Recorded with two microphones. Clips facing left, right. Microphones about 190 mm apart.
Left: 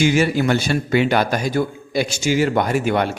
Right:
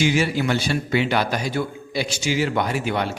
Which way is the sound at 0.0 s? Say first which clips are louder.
Left 4 dB; 50° left (ahead or behind).